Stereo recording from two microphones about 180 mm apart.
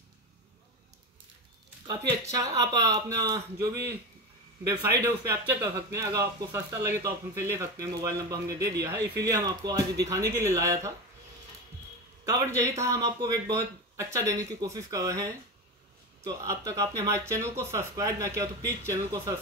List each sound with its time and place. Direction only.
1.9 s speech: 20° right (ahead or behind)
12.3 s speech: 15° right (ahead or behind)